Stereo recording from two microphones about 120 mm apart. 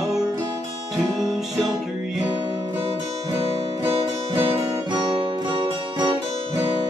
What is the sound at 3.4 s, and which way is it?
Music, 50° right (ahead or behind).